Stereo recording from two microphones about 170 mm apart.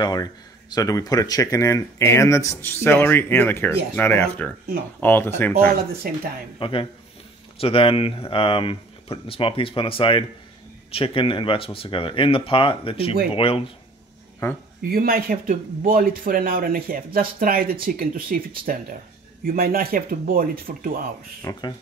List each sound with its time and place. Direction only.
0.0 s speech: 25° left (ahead or behind)
6.0 s speech: 60° right (ahead or behind)
6.6 s speech: 30° left (ahead or behind)
14.8 s speech: 60° right (ahead or behind)
21.4 s speech: 20° left (ahead or behind)